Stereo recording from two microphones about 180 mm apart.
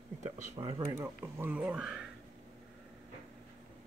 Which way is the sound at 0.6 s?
25° right (ahead or behind).